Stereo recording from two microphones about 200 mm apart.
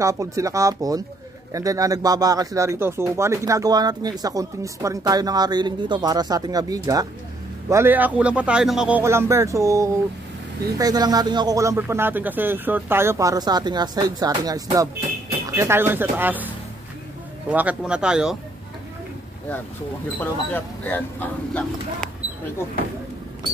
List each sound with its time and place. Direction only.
0.0 s speech: 15° right (ahead or behind)
20.2 s speech: 10° left (ahead or behind)